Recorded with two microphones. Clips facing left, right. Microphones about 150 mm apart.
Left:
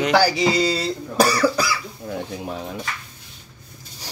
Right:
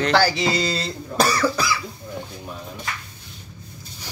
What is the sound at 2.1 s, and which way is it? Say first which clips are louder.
Speech: left 9 dB; 70° left (ahead or behind).